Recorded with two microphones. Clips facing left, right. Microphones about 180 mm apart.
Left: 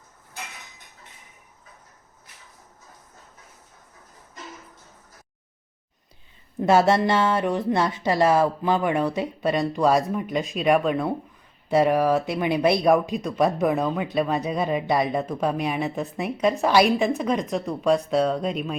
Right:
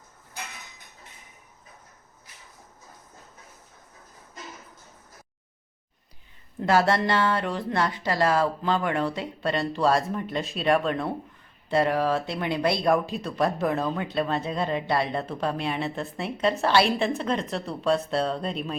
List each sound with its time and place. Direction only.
6.6 s a woman's voice: 20° left (ahead or behind); by 11.1 s 5° left (ahead or behind)
11.7 s a woman's voice: 15° left (ahead or behind)
17.8 s speech: centre (ahead or behind)